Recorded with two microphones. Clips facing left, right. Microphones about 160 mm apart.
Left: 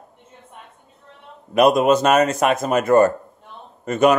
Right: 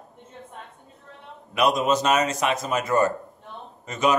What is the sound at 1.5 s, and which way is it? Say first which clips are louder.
A man's voice: left 7 dB; 50° left (ahead or behind).